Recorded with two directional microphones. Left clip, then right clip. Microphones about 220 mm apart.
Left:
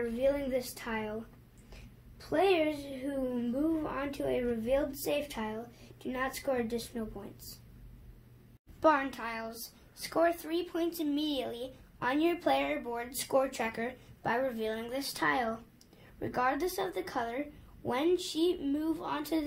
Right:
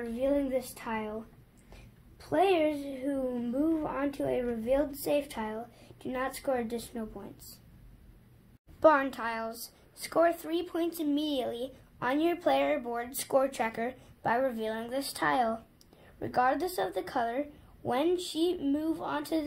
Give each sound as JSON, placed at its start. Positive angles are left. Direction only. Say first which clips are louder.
{"t": 0.1, "sound": "a child's voice", "louder": "right 4 dB", "side_deg": -30}
{"t": 8.8, "sound": "a child's voice", "louder": "right 4 dB", "side_deg": -25}